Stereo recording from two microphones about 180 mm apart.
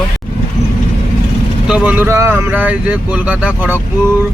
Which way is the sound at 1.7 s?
10° right (ahead or behind).